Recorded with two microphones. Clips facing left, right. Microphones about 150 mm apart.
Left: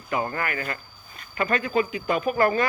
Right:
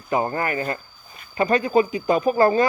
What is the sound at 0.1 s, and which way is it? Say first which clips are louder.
Speech: right 5 dB; 30° right (ahead or behind).